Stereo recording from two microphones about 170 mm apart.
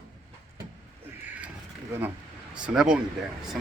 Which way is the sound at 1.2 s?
10° right (ahead or behind).